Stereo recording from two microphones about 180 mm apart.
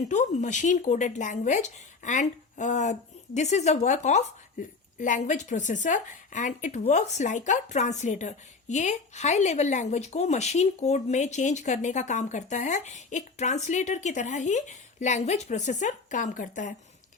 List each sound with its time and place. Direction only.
0.1 s a woman's voice: 40° left (ahead or behind)